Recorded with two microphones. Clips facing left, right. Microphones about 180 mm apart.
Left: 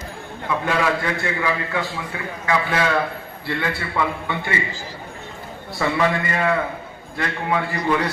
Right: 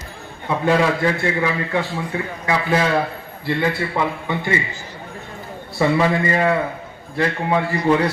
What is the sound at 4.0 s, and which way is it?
Speech, 25° right (ahead or behind).